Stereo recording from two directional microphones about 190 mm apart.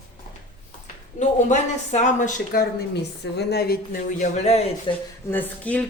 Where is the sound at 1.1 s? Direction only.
40° left (ahead or behind).